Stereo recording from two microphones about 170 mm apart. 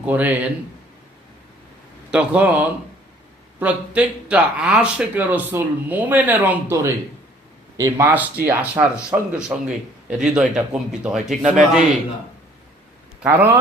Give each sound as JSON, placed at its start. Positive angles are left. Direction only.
{"t": 0.0, "sound": "speech", "side_deg": -10}
{"t": 2.0, "sound": "a man's voice", "side_deg": -5}
{"t": 13.2, "sound": "speech", "side_deg": -10}